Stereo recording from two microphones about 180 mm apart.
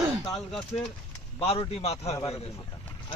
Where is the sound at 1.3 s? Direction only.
30° left (ahead or behind).